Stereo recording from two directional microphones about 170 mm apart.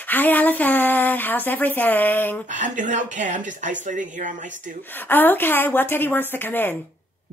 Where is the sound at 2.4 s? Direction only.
50° right (ahead or behind).